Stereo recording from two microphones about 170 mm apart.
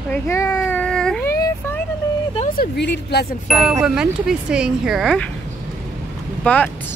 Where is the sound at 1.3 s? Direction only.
15° left (ahead or behind).